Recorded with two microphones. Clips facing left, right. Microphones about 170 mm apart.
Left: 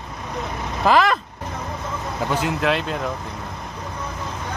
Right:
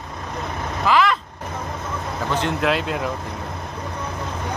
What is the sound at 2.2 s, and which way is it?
Speech, 5° left (ahead or behind).